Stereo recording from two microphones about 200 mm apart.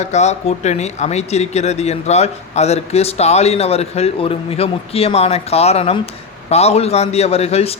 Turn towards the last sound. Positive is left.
turn(degrees=30)  # may be behind; listen again after turning